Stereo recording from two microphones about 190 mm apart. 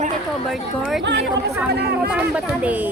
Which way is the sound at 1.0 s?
65° right (ahead or behind).